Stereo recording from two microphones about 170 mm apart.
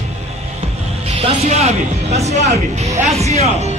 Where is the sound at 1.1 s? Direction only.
35° right (ahead or behind).